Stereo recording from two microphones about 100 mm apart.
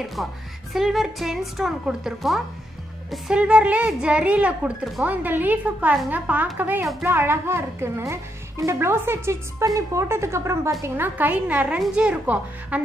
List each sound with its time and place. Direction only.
0.0 s a woman's voice: centre (ahead or behind)